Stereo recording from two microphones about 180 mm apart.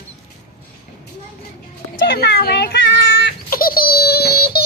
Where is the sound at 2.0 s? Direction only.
65° left (ahead or behind).